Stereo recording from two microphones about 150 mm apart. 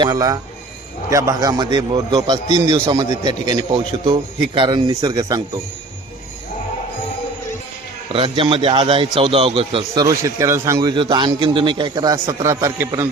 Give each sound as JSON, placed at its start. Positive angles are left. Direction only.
{"t": 0.0, "sound": "a man's voice", "side_deg": -25}
{"t": 8.1, "sound": "a man's voice", "side_deg": -35}
{"t": 9.9, "sound": "a man's voice", "side_deg": -25}